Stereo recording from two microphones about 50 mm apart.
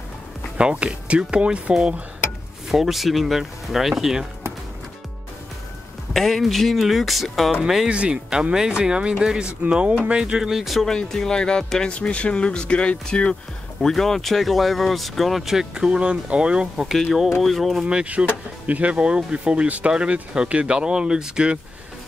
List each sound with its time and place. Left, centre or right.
0.6 s speech: right
2.7 s speech: centre
6.1 s speech: centre
7.9 s speech: centre
10.9 s speech: centre
13.7 s speech: centre
15.7 s speech: centre
17.0 s speech: centre
18.0 s speech: right